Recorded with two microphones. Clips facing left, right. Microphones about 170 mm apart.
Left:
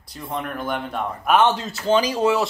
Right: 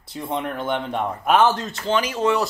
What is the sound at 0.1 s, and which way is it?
Speech, 25° right (ahead or behind).